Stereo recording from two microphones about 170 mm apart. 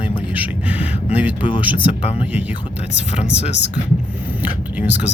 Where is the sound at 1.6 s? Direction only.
10° right (ahead or behind).